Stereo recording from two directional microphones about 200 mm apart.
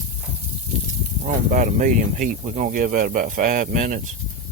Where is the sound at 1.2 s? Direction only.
40° right (ahead or behind).